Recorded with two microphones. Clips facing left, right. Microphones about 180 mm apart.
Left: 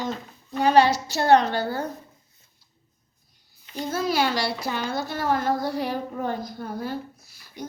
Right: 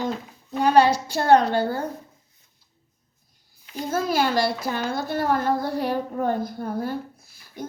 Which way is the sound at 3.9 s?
50° right (ahead or behind).